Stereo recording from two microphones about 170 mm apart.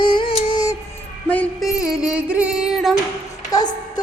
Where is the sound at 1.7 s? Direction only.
5° right (ahead or behind).